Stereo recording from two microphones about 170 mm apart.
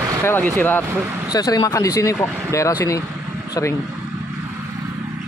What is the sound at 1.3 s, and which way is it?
Speech, 20° left (ahead or behind).